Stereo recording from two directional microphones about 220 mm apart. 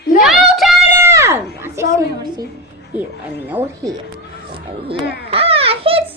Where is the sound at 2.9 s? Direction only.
5° right (ahead or behind).